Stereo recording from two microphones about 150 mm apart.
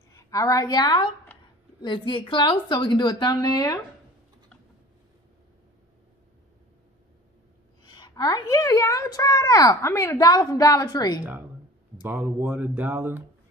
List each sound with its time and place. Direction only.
0.1 s a woman's voice: 25° left (ahead or behind)
7.8 s a woman's voice: 30° left (ahead or behind)
12.0 s speech: 15° right (ahead or behind)